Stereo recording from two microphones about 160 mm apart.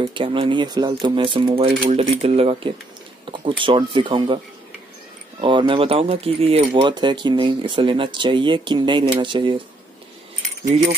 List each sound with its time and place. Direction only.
0.0 s speech: 30° right (ahead or behind)
5.4 s speech: 30° right (ahead or behind)